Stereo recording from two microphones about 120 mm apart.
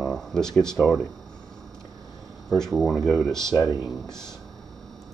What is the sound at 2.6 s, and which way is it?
Speech, 5° left (ahead or behind).